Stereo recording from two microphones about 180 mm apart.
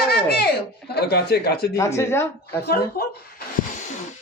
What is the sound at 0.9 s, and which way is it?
Speech, 60° left (ahead or behind).